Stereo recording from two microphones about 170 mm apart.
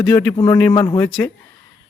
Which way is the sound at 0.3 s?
25° left (ahead or behind).